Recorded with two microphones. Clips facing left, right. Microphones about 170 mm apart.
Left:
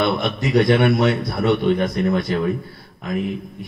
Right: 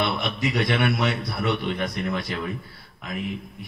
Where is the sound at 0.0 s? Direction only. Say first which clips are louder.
Left 5 dB; 45° left (ahead or behind).